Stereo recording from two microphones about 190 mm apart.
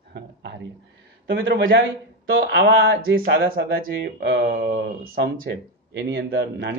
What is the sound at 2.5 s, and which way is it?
Speech, 60° right (ahead or behind).